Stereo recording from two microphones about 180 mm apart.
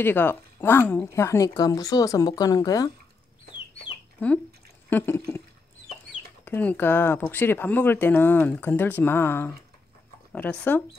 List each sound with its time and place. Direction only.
0.0 s speech: 10° left (ahead or behind)
4.2 s speech: 10° left (ahead or behind)
4.8 s a sound: 10° left (ahead or behind)
6.4 s speech: 10° left (ahead or behind)